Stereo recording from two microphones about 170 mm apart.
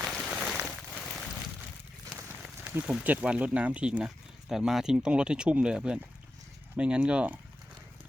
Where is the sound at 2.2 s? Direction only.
10° right (ahead or behind).